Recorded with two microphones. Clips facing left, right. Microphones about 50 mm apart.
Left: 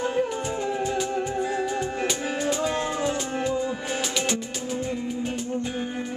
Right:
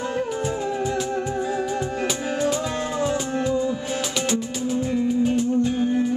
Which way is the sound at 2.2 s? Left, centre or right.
Centre.